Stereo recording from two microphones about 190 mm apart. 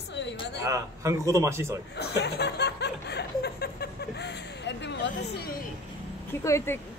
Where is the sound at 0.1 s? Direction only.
70° left (ahead or behind).